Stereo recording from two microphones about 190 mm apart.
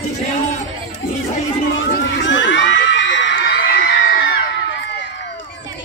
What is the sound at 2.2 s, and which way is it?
Crowd, 75° left (ahead or behind).